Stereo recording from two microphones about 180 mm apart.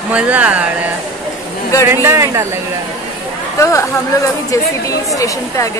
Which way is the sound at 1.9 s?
15° right (ahead or behind).